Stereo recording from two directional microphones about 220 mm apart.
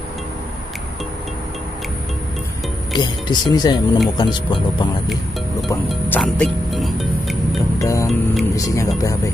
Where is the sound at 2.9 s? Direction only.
20° left (ahead or behind).